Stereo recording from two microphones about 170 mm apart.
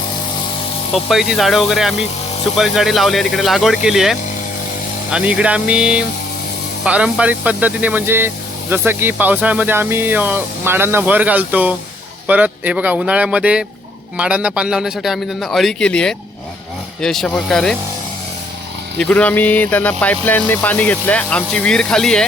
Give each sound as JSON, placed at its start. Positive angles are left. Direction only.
{"t": 0.9, "sound": "a man's voice", "side_deg": 0}
{"t": 18.9, "sound": "speech", "side_deg": 10}